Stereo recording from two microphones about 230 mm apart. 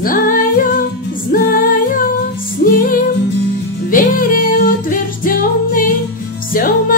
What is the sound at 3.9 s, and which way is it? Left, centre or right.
Music, left.